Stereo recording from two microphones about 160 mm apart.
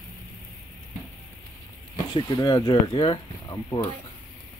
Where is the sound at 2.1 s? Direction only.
25° left (ahead or behind).